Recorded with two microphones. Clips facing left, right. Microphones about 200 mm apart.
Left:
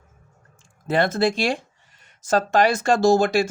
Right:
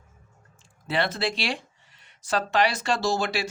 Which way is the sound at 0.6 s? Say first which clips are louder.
Left 6 dB; 45° left (ahead or behind).